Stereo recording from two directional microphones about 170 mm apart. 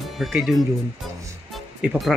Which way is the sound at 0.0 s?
Centre (ahead or behind).